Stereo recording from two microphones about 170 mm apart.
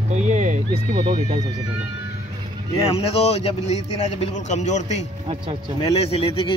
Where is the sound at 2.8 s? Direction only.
35° left (ahead or behind).